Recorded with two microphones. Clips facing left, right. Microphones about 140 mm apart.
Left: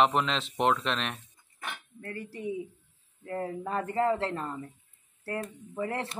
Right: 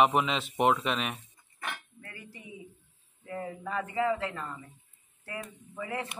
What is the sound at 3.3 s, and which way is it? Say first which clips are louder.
Speech: left 3 dB; 45° left (ahead or behind).